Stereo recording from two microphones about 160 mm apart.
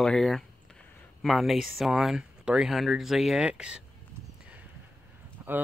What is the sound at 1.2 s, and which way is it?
Speech, centre (ahead or behind).